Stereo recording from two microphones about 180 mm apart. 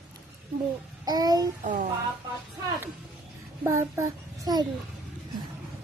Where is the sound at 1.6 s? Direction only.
45° right (ahead or behind).